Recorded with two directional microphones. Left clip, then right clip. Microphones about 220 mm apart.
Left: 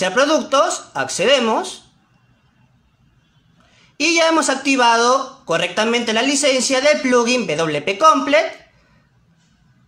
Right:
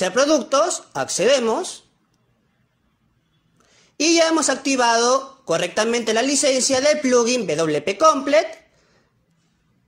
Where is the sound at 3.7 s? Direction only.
30° right (ahead or behind).